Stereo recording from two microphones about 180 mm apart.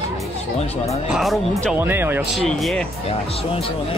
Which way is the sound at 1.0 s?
Centre (ahead or behind).